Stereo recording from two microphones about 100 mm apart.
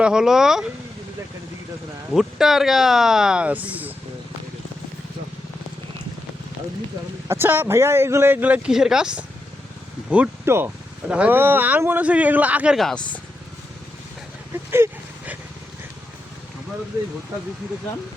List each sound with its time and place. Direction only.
0.0 s speech: 5° right (ahead or behind)
2.1 s speech: 5° right (ahead or behind)
7.3 s speech: 25° right (ahead or behind)
8.7 s speech: 5° right (ahead or behind)
10.4 s speech: 25° right (ahead or behind)
12.7 s speech: centre (ahead or behind)
14.5 s a sound: 25° right (ahead or behind)